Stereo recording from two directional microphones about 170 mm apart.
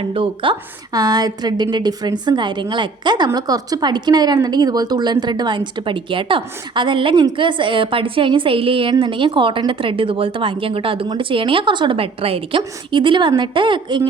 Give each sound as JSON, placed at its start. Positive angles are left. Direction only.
{"t": 0.0, "sound": "a woman's voice", "side_deg": -30}